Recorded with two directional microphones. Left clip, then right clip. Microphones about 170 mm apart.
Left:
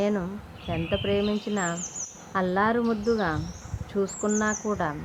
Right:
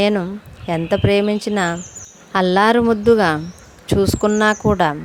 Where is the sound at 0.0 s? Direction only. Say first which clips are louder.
Right 10 dB; 55° right (ahead or behind).